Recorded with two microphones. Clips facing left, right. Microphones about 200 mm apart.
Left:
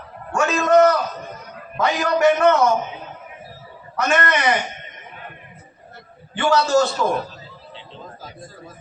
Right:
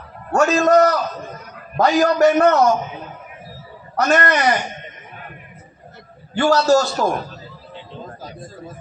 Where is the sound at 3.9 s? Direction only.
40° right (ahead or behind).